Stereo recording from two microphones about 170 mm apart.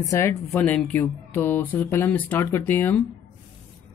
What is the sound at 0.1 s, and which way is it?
Speech, 15° left (ahead or behind).